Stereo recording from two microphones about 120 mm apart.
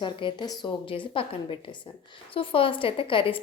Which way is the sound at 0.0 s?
45° left (ahead or behind).